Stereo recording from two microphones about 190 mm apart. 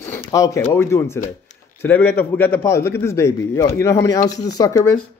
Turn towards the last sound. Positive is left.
turn(degrees=20)  # may be behind; listen again after turning